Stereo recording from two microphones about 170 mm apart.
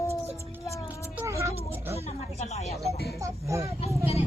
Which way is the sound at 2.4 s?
40° left (ahead or behind).